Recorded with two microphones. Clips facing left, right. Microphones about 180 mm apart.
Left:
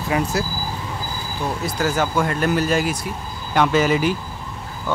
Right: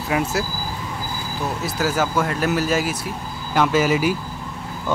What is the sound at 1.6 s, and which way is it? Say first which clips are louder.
Speech: even; 5° right (ahead or behind).